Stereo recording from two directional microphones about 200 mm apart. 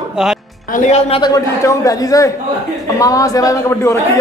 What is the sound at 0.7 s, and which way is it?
A man's voice, 35° left (ahead or behind).